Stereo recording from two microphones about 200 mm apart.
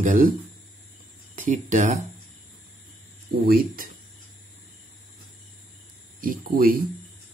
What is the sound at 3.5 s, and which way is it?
Speech, 45° right (ahead or behind).